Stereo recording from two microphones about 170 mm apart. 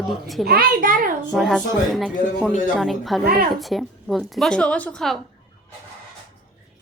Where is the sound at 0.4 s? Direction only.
60° right (ahead or behind).